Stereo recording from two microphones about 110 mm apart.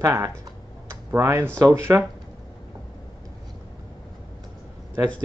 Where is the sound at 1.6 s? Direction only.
25° right (ahead or behind).